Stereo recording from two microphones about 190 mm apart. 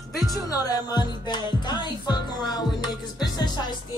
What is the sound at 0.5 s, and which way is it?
Music, 20° left (ahead or behind).